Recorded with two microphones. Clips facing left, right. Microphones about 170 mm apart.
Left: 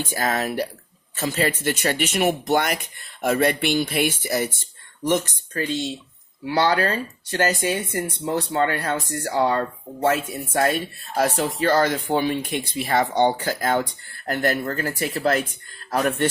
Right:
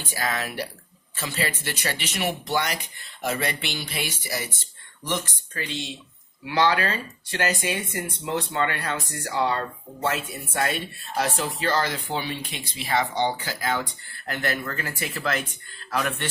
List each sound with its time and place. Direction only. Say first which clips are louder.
0.0 s speech: left 5 dB; 45° left (ahead or behind)